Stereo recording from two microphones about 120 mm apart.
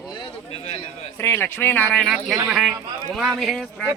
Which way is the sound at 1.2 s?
20° left (ahead or behind).